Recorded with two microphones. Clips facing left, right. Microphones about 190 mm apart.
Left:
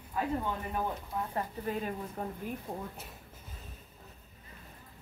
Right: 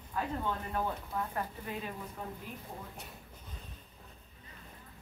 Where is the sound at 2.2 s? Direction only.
50° left (ahead or behind).